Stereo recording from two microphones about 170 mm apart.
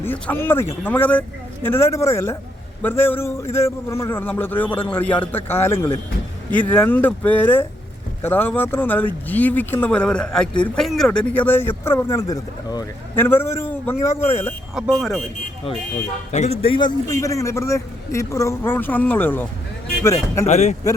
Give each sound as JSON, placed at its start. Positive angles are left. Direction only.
{"t": 0.0, "sound": "speech", "side_deg": 10}
{"t": 14.8, "sound": "speech", "side_deg": 0}
{"t": 16.3, "sound": "speech", "side_deg": 45}
{"t": 16.6, "sound": "speech", "side_deg": 25}
{"t": 20.5, "sound": "speech", "side_deg": 40}